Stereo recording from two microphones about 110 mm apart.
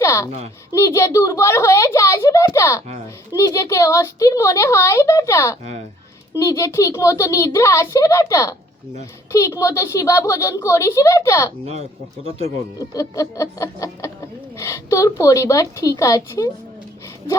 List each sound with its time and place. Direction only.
0.0 s a sound: 25° left (ahead or behind)
0.3 s speech: 75° right (ahead or behind)
0.7 s a woman's voice: 25° left (ahead or behind)
11.6 s speech: 75° right (ahead or behind)
12.9 s a sound: 30° left (ahead or behind)
14.5 s a woman's voice: 25° left (ahead or behind)